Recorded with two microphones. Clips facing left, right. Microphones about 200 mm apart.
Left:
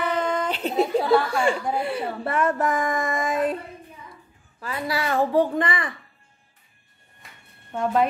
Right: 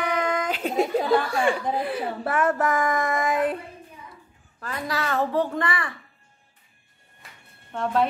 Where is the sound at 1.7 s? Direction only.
Centre (ahead or behind).